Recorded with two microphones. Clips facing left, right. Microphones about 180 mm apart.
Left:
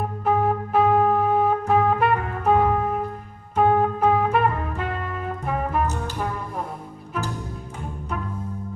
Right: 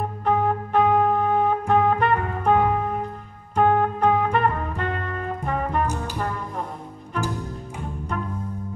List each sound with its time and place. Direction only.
0.2 s music: 5° left (ahead or behind)